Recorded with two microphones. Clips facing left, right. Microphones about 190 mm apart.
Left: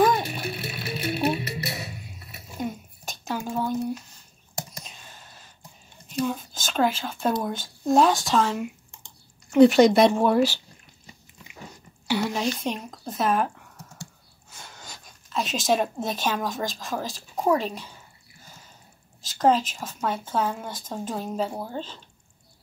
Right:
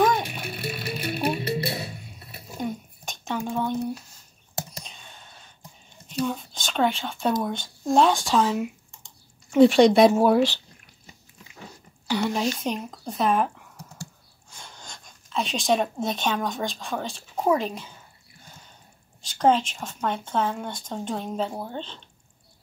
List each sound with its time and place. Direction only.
0.0 s music: centre (ahead or behind)
1.4 s music: 30° right (ahead or behind)
2.5 s drip: centre (ahead or behind)
4.8 s a sound: 5° left (ahead or behind)
6.0 s whispering: centre (ahead or behind)
7.4 s speech: 5° left (ahead or behind)
12.1 s speech: centre (ahead or behind)
19.2 s speech: centre (ahead or behind)